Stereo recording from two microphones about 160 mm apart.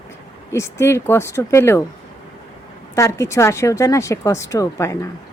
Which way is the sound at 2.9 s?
20° left (ahead or behind).